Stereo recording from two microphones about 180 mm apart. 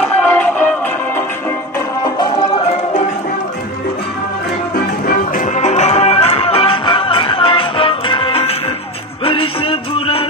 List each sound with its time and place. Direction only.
0.0 s music: 5° left (ahead or behind)
2.0 s music: 25° left (ahead or behind)
5.0 s music: 50° left (ahead or behind); by 10.2 s 30° left (ahead or behind)